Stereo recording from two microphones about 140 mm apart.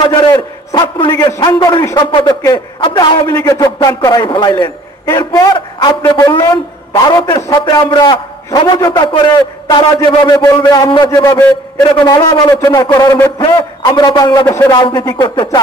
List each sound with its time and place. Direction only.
0.1 s a sound: 30° left (ahead or behind)
0.9 s a man's voice: 35° left (ahead or behind)
3.3 s a man's voice: 25° left (ahead or behind)
14.8 s a man's voice: 35° left (ahead or behind)